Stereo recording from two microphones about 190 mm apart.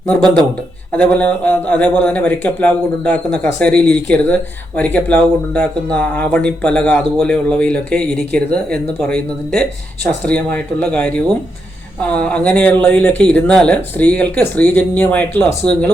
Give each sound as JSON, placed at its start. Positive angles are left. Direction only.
{"t": 0.2, "sound": "speech", "side_deg": -20}
{"t": 0.9, "sound": "speech", "side_deg": 5}